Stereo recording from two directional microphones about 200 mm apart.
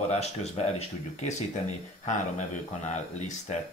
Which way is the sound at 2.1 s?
35° left (ahead or behind).